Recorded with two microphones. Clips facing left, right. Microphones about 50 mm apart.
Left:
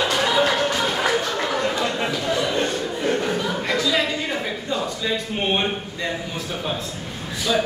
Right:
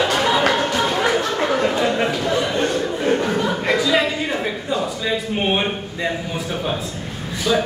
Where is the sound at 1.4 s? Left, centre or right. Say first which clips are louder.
Right 4 dB; right.